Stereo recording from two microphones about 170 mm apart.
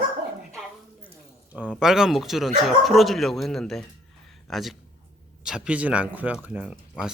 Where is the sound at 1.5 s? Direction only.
10° right (ahead or behind).